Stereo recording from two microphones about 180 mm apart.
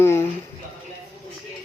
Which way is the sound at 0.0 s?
15° left (ahead or behind).